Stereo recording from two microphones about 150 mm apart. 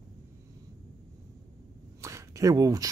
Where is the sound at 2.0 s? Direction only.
20° right (ahead or behind).